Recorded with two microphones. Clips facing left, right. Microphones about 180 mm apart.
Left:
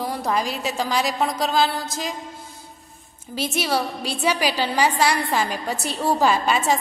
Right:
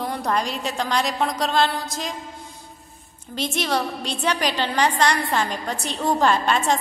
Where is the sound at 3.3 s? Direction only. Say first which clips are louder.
Left 1 dB; 5° left (ahead or behind).